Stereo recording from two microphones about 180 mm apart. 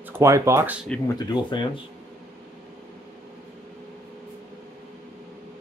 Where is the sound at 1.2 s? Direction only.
25° left (ahead or behind).